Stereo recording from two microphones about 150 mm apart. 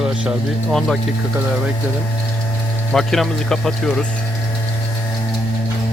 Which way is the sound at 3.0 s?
5° left (ahead or behind).